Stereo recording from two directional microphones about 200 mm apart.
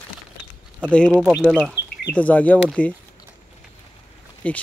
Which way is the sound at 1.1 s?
5° right (ahead or behind).